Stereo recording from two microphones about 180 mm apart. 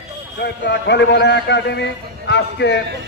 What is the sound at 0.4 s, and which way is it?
A man's voice, 75° left (ahead or behind).